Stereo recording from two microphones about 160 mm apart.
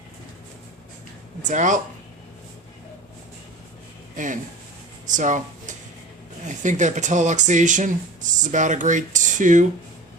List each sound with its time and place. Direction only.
1.4 s speech: 50° right (ahead or behind)
4.1 s speech: 55° right (ahead or behind)